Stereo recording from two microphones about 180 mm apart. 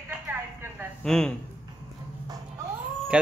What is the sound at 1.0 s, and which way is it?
Speech, 5° left (ahead or behind).